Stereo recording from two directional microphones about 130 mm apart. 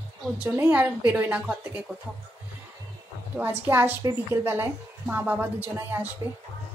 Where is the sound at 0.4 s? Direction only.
15° right (ahead or behind).